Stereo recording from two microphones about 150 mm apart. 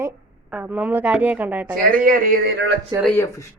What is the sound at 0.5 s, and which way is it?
A woman's voice, 10° right (ahead or behind).